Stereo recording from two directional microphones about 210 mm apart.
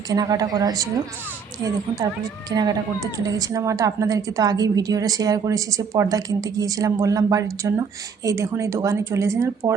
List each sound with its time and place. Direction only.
0.1 s a woman's voice: 15° right (ahead or behind)
2.5 s a woman's voice: 20° right (ahead or behind)